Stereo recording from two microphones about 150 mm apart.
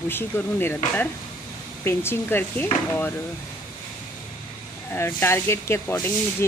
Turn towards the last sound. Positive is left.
turn(degrees=15)  # may be behind; listen again after turning